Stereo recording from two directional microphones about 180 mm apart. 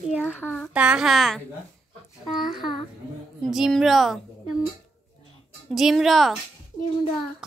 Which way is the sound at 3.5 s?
Centre (ahead or behind).